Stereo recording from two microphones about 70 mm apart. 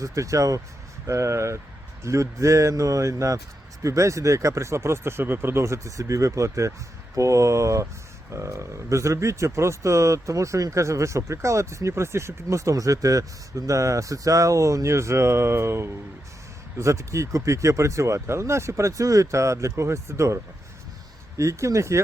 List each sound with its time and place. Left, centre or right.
0.0 s speech: right